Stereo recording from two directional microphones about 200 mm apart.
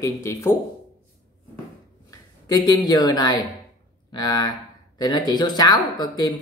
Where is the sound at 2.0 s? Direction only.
20° left (ahead or behind).